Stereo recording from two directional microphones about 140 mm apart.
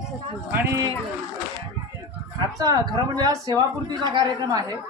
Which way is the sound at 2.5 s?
25° right (ahead or behind).